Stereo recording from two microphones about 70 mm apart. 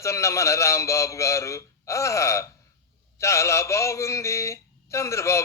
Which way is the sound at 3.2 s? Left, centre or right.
Left.